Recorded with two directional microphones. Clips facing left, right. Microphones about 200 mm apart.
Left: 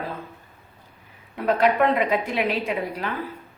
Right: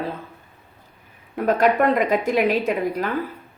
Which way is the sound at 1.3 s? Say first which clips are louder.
Right 2 dB; 45° right (ahead or behind).